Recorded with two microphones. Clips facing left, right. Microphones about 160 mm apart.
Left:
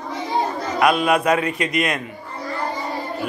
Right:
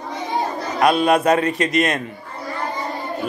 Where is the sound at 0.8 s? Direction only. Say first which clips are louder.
Right 2 dB; 35° right (ahead or behind).